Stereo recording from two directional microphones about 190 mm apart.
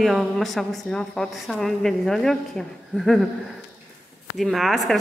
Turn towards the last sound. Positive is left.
turn(degrees=0)  # may be behind; listen again after turning